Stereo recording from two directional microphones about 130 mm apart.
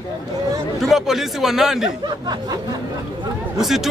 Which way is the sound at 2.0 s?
30° right (ahead or behind).